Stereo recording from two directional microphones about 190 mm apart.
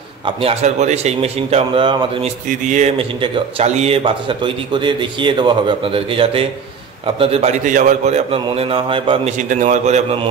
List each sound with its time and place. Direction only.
0.4 s a man's voice: 35° right (ahead or behind)
2.6 s a man's voice: 40° right (ahead or behind)
9.5 s a man's voice: 40° right (ahead or behind)